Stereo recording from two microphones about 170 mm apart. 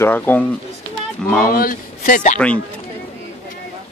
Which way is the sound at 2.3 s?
5° left (ahead or behind).